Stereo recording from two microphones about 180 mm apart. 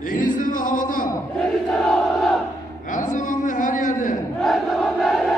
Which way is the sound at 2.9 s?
45° left (ahead or behind).